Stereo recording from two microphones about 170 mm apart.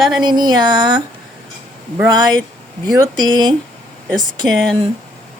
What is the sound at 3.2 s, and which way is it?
Speech, 25° right (ahead or behind).